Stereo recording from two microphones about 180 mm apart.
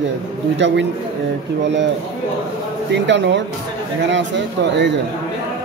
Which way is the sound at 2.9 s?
85° right.